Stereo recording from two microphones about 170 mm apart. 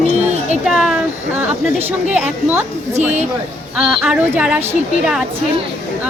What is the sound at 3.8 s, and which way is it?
Speech, 5° right (ahead or behind).